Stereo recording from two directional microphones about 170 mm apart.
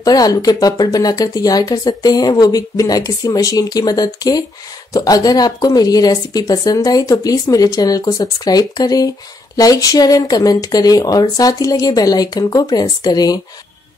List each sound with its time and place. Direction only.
0.0 s speech: 20° left (ahead or behind)